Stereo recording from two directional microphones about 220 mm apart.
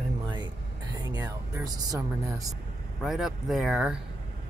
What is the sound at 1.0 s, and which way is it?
Speech, 15° right (ahead or behind).